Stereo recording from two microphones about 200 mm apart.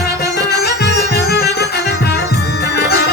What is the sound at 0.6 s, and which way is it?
Music, 55° left (ahead or behind).